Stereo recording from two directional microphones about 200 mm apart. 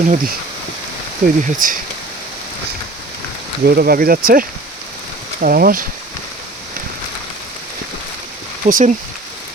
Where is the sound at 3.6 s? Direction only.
50° right (ahead or behind).